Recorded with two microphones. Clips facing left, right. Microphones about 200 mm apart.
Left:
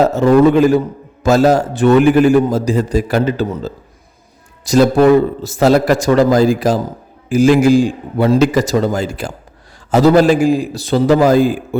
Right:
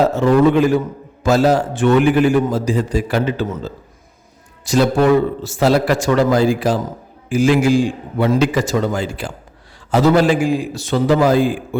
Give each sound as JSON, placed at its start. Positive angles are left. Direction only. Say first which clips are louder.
{"t": 0.0, "sound": "a man's voice", "louder": "left 3 dB", "side_deg": 40}